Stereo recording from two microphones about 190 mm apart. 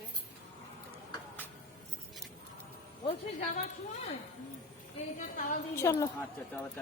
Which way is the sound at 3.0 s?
35° left (ahead or behind).